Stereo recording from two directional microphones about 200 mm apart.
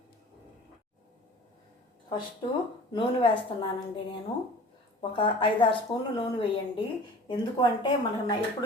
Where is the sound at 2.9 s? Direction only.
25° left (ahead or behind).